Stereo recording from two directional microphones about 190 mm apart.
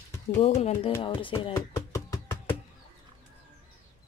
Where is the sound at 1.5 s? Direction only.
15° left (ahead or behind).